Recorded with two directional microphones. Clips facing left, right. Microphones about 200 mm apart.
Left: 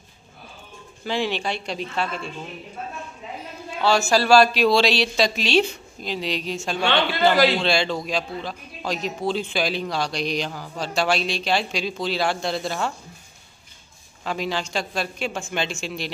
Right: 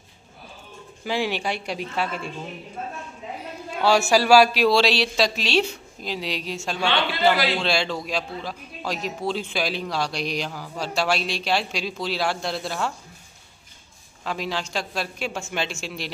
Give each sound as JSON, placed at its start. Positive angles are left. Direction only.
{"t": 1.0, "sound": "speech", "side_deg": -10}
{"t": 3.8, "sound": "a man's voice", "side_deg": -10}
{"t": 14.2, "sound": "a man's voice", "side_deg": 0}